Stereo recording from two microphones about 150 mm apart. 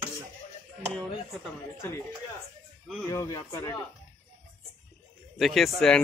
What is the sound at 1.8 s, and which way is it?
Speech, 15° left (ahead or behind).